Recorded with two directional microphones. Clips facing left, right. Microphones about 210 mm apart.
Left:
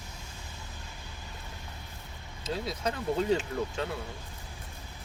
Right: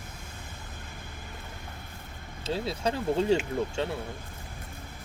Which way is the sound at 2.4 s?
30° right (ahead or behind).